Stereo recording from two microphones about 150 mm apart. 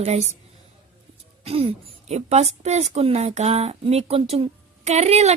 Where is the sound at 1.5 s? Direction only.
40° right (ahead or behind).